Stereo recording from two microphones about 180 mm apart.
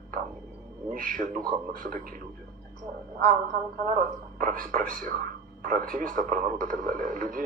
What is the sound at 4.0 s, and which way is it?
Speech, 50° right (ahead or behind).